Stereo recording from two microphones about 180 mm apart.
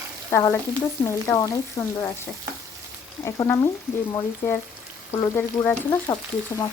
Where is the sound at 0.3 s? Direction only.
15° left (ahead or behind).